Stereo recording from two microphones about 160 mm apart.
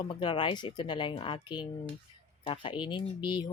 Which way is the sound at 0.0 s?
30° left (ahead or behind).